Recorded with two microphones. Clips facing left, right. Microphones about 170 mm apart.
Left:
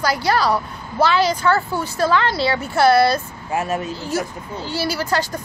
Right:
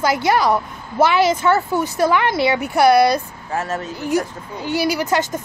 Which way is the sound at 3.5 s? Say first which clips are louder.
Left 1 dB; 15° left (ahead or behind).